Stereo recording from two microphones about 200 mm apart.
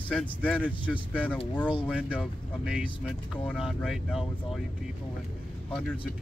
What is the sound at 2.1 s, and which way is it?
Speech, 5° right (ahead or behind).